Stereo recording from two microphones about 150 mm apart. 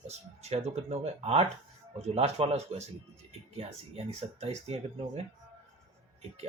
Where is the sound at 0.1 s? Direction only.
45° right (ahead or behind).